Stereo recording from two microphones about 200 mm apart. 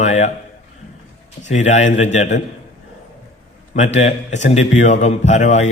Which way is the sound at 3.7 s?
35° left (ahead or behind).